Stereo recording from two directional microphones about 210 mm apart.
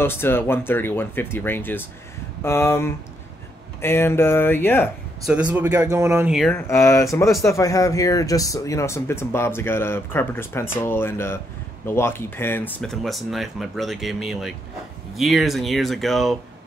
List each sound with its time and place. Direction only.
0.0 s speech: 10° left (ahead or behind)
5.2 s speech: 5° right (ahead or behind)
6.7 s speech: 15° left (ahead or behind)